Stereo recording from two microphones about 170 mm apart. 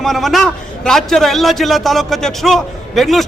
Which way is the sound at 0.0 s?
Centre (ahead or behind).